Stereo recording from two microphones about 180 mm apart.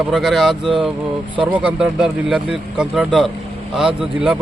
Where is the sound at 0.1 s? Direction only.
Centre (ahead or behind).